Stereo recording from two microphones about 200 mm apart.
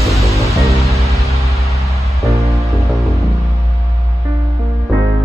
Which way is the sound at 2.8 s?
Centre (ahead or behind).